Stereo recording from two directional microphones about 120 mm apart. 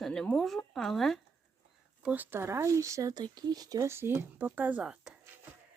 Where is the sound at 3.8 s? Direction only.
20° right (ahead or behind).